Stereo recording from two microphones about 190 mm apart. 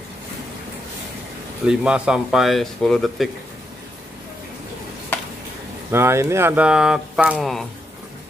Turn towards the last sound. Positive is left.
turn(degrees=-5)  # may be behind; listen again after turning